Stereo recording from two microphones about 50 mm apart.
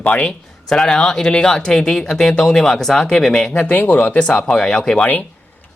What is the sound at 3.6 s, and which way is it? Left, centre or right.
Speech, left.